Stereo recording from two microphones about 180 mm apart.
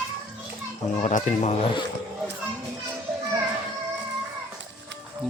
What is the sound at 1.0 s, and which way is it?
Speech, 40° left (ahead or behind).